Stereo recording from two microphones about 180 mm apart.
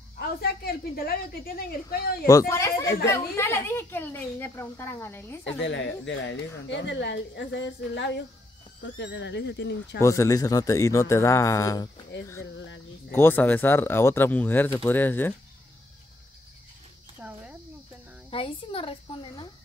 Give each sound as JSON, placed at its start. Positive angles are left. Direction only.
{"t": 0.4, "sound": "a woman's voice", "side_deg": 60}
{"t": 2.2, "sound": "a woman's voice", "side_deg": 15}
{"t": 5.6, "sound": "speech", "side_deg": 90}
{"t": 10.0, "sound": "a woman's voice", "side_deg": 15}
{"t": 12.5, "sound": "speech", "side_deg": 80}
{"t": 13.1, "sound": "a woman's voice", "side_deg": 10}
{"t": 17.2, "sound": "a sound", "side_deg": -5}
{"t": 18.3, "sound": "a sound", "side_deg": 30}